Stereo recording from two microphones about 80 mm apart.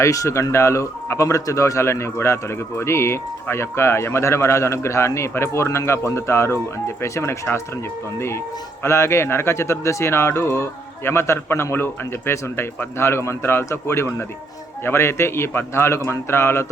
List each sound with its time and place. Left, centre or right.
0.0 s speech: left
8.8 s speech: left